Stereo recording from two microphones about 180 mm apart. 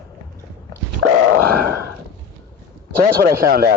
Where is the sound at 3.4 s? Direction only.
55° right (ahead or behind).